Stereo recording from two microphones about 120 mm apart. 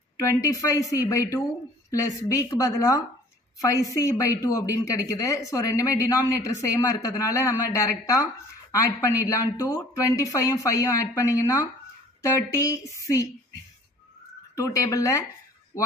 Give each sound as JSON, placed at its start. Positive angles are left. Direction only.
{"t": 0.2, "sound": "speech", "side_deg": 25}
{"t": 14.5, "sound": "speech", "side_deg": 25}